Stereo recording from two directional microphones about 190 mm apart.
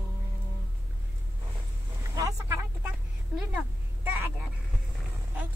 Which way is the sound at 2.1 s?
15° right (ahead or behind).